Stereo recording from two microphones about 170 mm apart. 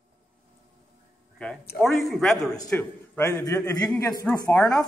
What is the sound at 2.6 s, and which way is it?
A man's voice, 10° left (ahead or behind).